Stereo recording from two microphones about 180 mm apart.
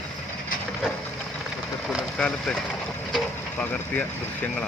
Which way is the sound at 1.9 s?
5° left (ahead or behind).